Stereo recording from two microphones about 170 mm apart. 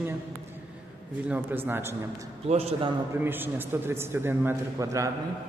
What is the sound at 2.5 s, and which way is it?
Speech, 40° right (ahead or behind).